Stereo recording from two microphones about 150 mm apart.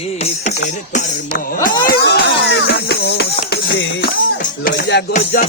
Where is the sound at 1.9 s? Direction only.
90° left.